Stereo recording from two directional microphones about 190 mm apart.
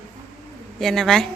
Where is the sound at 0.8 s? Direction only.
Centre (ahead or behind).